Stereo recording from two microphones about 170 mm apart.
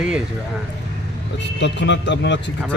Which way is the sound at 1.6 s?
90° left.